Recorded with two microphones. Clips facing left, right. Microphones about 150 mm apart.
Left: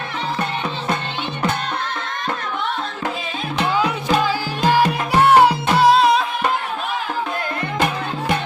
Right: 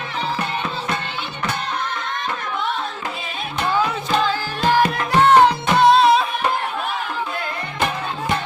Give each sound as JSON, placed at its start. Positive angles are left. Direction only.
{"t": 3.7, "sound": "music", "side_deg": 15}